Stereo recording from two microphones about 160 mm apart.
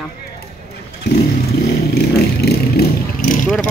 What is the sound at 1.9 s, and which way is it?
Vehicle, 85° left.